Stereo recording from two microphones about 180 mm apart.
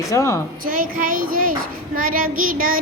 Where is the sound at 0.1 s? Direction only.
15° left (ahead or behind).